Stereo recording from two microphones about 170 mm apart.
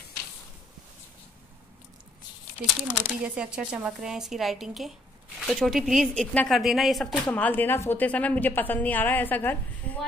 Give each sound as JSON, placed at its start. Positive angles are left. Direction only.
{"t": 2.9, "sound": "speech", "side_deg": -10}